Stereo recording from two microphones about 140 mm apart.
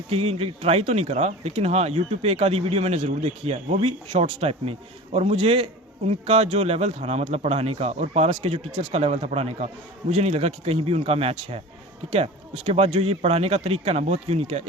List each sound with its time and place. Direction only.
0.1 s speech: 45° right (ahead or behind)